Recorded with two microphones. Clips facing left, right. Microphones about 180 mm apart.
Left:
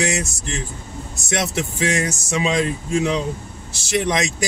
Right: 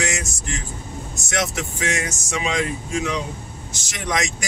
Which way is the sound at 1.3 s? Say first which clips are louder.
Left 2 dB; 30° left (ahead or behind).